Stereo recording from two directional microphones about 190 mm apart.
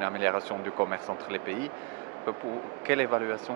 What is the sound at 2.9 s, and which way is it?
Speech, 15° right (ahead or behind).